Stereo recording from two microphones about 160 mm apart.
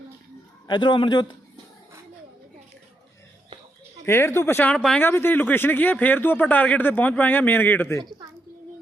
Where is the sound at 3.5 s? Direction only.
30° right (ahead or behind).